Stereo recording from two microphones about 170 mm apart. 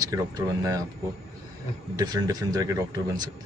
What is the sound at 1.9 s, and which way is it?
Speech, 20° right (ahead or behind).